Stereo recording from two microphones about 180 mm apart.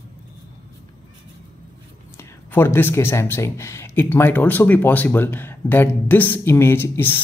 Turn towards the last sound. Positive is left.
turn(degrees=10)  # may be behind; listen again after turning